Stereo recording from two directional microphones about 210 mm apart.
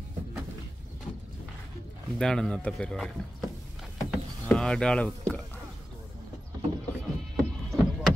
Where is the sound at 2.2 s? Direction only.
5° left (ahead or behind).